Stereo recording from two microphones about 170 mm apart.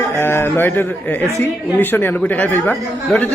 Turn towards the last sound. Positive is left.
turn(degrees=10)  # may be behind; listen again after turning